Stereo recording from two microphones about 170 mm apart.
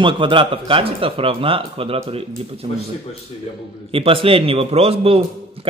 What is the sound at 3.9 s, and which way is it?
A man's voice, 30° right (ahead or behind).